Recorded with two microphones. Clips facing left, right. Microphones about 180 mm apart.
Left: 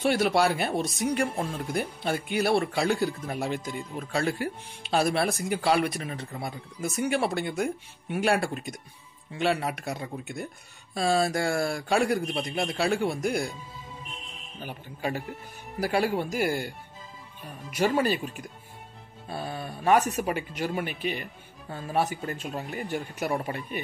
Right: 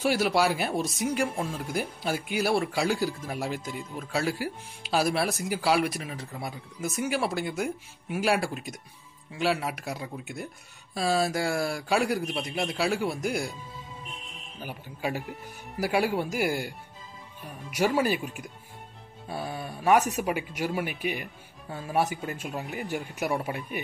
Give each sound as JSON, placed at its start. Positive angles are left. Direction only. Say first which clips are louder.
{"t": 0.0, "sound": "speech", "louder": "left 1 dB", "side_deg": -5}
{"t": 14.6, "sound": "speech", "louder": "even", "side_deg": -10}